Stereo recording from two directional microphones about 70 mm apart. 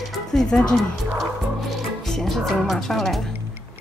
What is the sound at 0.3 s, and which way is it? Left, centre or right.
Speech, centre.